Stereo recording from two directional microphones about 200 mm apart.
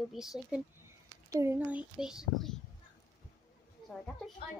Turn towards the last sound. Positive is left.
turn(degrees=0)  # may be behind; listen again after turning